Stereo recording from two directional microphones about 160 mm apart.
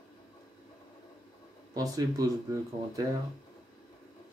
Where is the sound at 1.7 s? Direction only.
20° right (ahead or behind).